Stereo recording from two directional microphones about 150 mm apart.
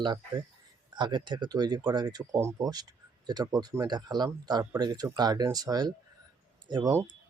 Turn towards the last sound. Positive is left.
turn(degrees=-20)  # may be behind; listen again after turning